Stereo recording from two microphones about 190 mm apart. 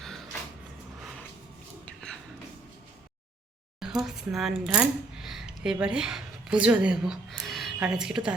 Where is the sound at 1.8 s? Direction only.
5° left (ahead or behind).